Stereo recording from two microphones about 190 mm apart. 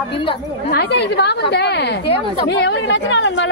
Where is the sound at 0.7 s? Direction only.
60° left (ahead or behind).